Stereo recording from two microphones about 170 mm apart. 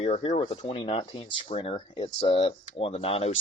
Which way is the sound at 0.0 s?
40° left (ahead or behind).